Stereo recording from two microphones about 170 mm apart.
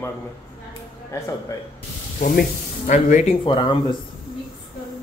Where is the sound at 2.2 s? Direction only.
50° left (ahead or behind).